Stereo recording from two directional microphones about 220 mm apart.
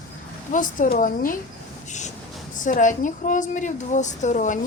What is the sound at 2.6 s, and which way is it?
A woman's voice, 35° left (ahead or behind).